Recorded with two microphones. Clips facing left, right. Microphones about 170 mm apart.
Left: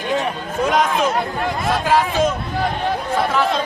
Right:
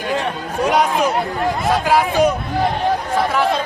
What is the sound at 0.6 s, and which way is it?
A man's voice, 10° right (ahead or behind).